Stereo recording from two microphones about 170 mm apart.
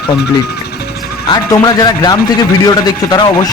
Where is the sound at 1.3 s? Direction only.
25° left (ahead or behind).